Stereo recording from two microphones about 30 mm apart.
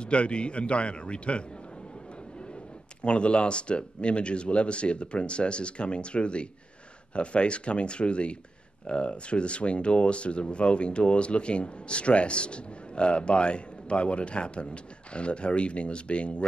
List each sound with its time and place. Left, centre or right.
0.0 s speech: left
3.0 s speech: left